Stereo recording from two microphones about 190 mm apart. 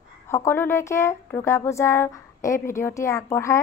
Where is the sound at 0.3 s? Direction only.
15° left (ahead or behind).